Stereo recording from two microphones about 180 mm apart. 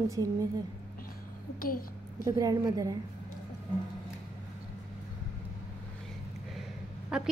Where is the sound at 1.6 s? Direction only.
55° left (ahead or behind).